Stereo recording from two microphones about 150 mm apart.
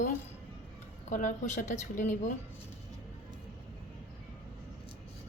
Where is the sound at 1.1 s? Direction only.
55° left (ahead or behind).